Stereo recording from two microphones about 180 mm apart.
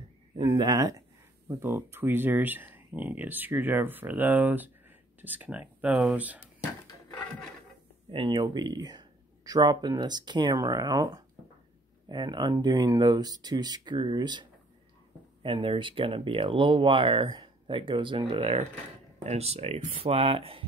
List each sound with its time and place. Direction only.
0.4 s speech: 20° right (ahead or behind)
8.1 s speech: 25° right (ahead or behind)